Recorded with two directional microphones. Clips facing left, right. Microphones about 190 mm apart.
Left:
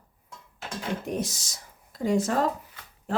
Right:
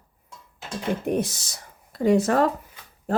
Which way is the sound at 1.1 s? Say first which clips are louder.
Right 6 dB; 60° right (ahead or behind).